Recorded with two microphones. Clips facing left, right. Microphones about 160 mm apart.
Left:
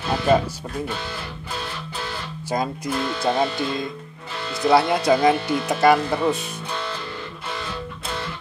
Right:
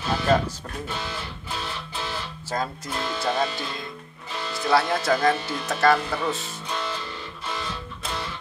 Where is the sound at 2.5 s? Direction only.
15° left (ahead or behind).